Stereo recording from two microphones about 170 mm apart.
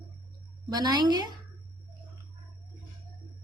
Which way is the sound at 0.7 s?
25° right (ahead or behind).